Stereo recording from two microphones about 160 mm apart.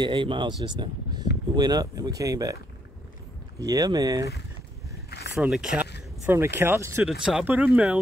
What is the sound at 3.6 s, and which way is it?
Speech, 20° right (ahead or behind).